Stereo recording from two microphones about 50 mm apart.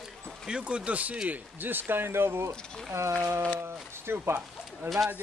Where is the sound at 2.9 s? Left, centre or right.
Right.